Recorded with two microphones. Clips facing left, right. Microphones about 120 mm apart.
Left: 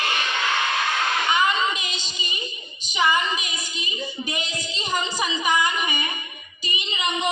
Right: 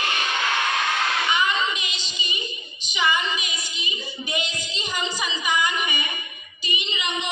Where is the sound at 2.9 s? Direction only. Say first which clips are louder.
Left 2 dB; 40° left (ahead or behind).